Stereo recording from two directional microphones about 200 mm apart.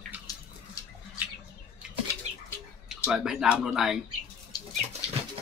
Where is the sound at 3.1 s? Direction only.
Centre (ahead or behind).